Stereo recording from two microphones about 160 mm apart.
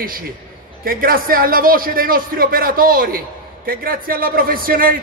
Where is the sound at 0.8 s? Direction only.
65° right (ahead or behind).